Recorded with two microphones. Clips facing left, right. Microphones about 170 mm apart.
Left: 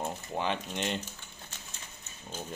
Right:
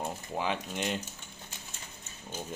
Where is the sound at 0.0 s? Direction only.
5° right (ahead or behind).